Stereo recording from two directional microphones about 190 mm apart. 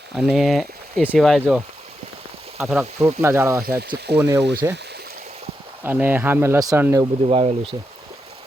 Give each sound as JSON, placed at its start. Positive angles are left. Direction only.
{"t": 0.2, "sound": "speech", "side_deg": 0}
{"t": 3.0, "sound": "speech", "side_deg": -15}
{"t": 3.8, "sound": "speech", "side_deg": -60}
{"t": 4.2, "sound": "speech", "side_deg": -15}
{"t": 5.8, "sound": "speech", "side_deg": -10}
{"t": 7.0, "sound": "speech", "side_deg": -30}